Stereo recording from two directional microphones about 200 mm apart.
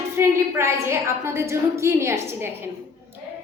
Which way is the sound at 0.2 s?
15° right (ahead or behind).